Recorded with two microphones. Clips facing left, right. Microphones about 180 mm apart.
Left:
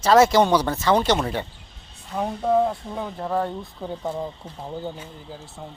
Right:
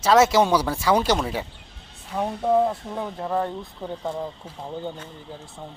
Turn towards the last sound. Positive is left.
turn(degrees=5)  # may be behind; listen again after turning